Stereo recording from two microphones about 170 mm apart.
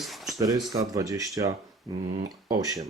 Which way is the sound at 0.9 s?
20° right (ahead or behind).